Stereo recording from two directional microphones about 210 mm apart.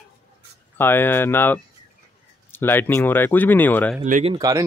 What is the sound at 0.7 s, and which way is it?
Speech, 10° left (ahead or behind).